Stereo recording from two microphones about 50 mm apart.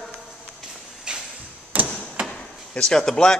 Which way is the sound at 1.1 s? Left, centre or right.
Centre.